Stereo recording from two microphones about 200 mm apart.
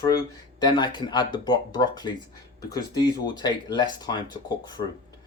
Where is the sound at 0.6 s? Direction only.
20° left (ahead or behind).